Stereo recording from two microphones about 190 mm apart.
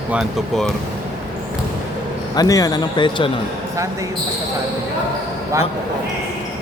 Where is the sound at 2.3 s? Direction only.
20° left (ahead or behind).